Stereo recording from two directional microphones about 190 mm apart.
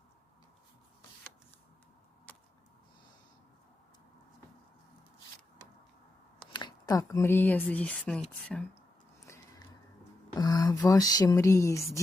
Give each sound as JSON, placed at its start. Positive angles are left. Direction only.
{"t": 2.3, "sound": "vehicle", "side_deg": 10}
{"t": 6.5, "sound": "speech", "side_deg": 20}
{"t": 10.3, "sound": "a sound", "side_deg": 20}